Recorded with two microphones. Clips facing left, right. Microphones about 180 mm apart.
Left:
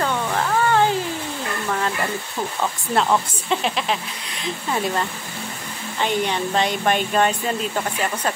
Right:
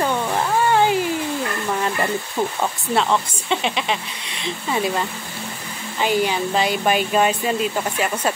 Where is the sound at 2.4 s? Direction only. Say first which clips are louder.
Right 5 dB; 20° right (ahead or behind).